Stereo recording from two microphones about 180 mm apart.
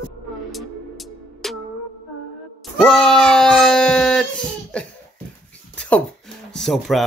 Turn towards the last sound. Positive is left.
turn(degrees=0)  # may be behind; listen again after turning